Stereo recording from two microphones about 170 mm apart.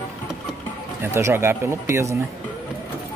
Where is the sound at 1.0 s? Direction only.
15° right (ahead or behind).